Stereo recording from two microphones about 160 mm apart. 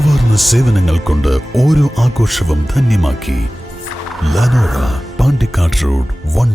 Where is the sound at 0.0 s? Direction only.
Centre (ahead or behind).